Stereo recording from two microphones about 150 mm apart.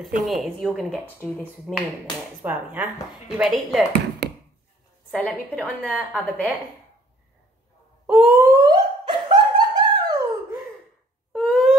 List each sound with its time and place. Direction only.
0.0 s a woman's voice: centre (ahead or behind)
1.0 s a woman's voice: 15° left (ahead or behind)
1.7 s a woman's voice: centre (ahead or behind)
4.2 s chop: 90° right
5.8 s a woman's voice: 10° left (ahead or behind)
8.1 s a sound: 10° right (ahead or behind)
8.5 s a sound: 30° right (ahead or behind)
11.3 s owl: 5° left (ahead or behind)